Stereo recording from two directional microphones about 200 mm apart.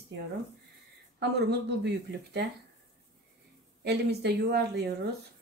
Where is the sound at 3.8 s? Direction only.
55° right (ahead or behind).